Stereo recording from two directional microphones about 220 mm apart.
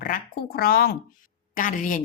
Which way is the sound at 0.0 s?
40° left (ahead or behind).